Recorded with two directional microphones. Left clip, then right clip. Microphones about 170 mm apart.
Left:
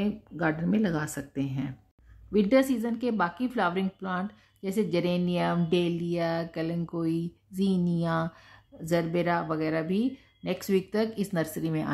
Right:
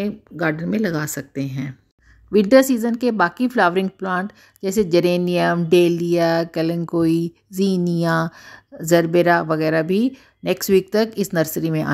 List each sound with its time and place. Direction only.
0.0 s a woman's voice: 25° right (ahead or behind)
2.3 s speech: 50° right (ahead or behind)